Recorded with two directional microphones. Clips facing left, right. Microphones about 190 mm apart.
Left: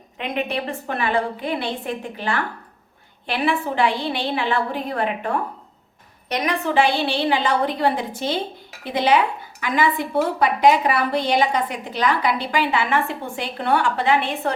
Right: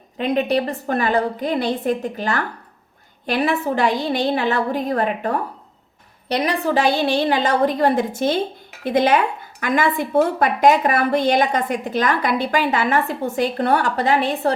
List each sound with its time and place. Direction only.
0.2 s a woman's voice: 35° right (ahead or behind)